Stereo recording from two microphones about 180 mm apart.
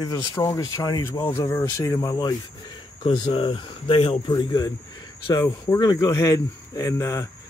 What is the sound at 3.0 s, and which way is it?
Speech, 30° left (ahead or behind).